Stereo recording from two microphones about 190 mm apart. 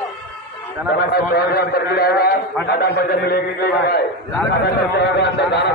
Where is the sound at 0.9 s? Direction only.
55° left (ahead or behind).